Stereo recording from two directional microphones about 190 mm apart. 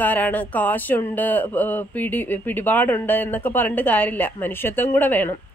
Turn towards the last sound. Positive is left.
turn(degrees=10)  # may be behind; listen again after turning